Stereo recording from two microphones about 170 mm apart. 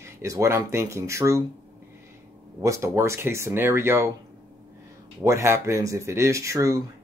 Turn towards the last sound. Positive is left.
turn(degrees=-20)  # may be behind; listen again after turning